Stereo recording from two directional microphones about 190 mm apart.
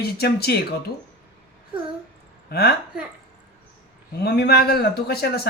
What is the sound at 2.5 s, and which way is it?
Speech, 55° left (ahead or behind).